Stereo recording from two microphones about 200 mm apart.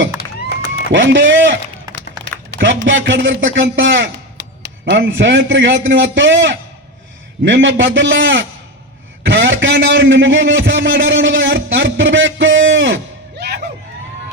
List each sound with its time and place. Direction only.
0.9 s a man's voice: 70° right (ahead or behind)